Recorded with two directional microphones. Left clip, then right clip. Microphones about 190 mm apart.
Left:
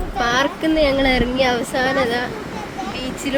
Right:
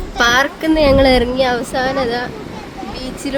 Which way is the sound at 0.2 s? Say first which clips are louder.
Right 5 dB; 25° right (ahead or behind).